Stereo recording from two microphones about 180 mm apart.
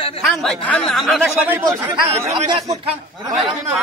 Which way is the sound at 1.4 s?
10° right (ahead or behind).